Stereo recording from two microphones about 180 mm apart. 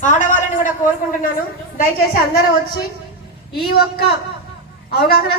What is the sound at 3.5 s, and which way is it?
A woman's voice, 60° left (ahead or behind).